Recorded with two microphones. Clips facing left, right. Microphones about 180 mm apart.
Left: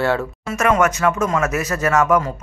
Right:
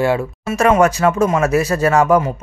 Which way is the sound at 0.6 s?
30° right (ahead or behind).